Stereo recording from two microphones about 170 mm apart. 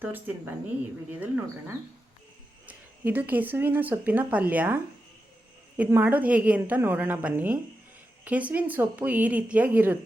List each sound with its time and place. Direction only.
0.0 s speech: 10° right (ahead or behind)
2.6 s speech: 10° right (ahead or behind)